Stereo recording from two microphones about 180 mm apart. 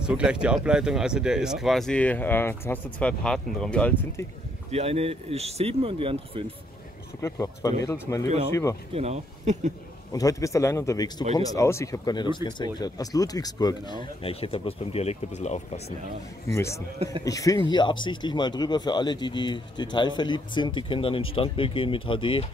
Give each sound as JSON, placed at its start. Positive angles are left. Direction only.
{"t": 0.0, "sound": "speech", "side_deg": -5}
{"t": 4.6, "sound": "speech", "side_deg": -35}
{"t": 7.2, "sound": "speech", "side_deg": 15}
{"t": 8.9, "sound": "speech", "side_deg": -35}
{"t": 10.1, "sound": "speech", "side_deg": 20}
{"t": 16.5, "sound": "speech", "side_deg": 15}